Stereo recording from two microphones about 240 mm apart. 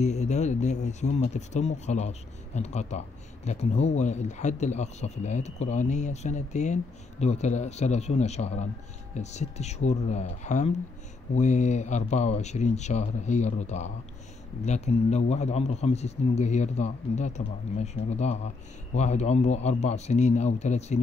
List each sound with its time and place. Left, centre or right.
0.0 s speech: left